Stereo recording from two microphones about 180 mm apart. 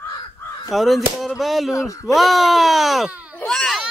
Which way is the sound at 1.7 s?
20° left (ahead or behind).